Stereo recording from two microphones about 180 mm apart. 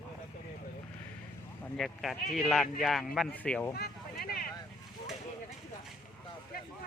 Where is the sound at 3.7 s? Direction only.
55° left (ahead or behind).